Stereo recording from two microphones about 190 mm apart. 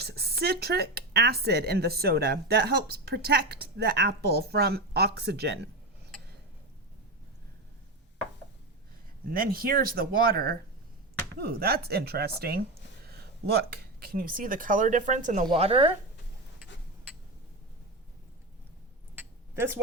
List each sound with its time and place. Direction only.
0.0 s speech: 60° right (ahead or behind)
9.3 s speech: 50° right (ahead or behind)
15.4 s speech: 30° right (ahead or behind)
19.1 s a sound: 10° right (ahead or behind)